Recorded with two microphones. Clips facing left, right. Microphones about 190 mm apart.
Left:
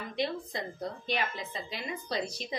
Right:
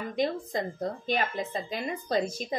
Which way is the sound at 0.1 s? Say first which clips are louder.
Right 4 dB; 45° right (ahead or behind).